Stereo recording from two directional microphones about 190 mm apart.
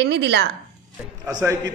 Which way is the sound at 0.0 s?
65° right (ahead or behind).